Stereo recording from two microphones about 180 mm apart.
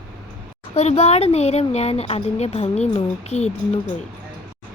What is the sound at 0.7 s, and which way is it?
Speech, 35° left (ahead or behind).